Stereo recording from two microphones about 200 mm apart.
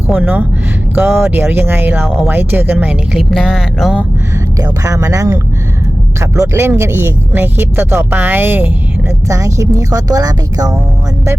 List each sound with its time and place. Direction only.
0.1 s speech: 5° right (ahead or behind)
4.6 s speech: 15° right (ahead or behind)